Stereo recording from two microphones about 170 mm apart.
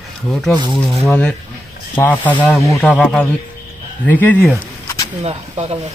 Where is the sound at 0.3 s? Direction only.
Centre (ahead or behind).